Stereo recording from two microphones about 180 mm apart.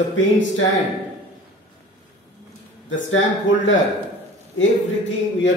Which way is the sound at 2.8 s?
90° left.